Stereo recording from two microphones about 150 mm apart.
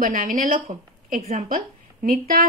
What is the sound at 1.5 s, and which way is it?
Speech, 70° right (ahead or behind).